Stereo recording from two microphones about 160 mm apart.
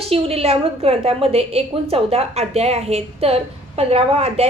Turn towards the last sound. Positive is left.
turn(degrees=-40)  # may be behind; listen again after turning